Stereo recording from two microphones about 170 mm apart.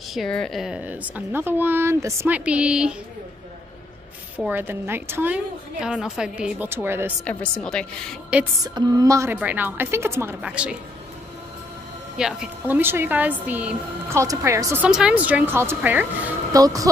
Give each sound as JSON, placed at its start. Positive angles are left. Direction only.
{"t": 0.1, "sound": "a woman's voice", "side_deg": 5}
{"t": 4.4, "sound": "a woman's voice", "side_deg": -10}
{"t": 7.2, "sound": "a woman's voice", "side_deg": 5}
{"t": 8.6, "sound": "a woman's voice", "side_deg": -25}
{"t": 12.2, "sound": "a woman's voice", "side_deg": -5}
{"t": 14.9, "sound": "a woman's voice", "side_deg": -5}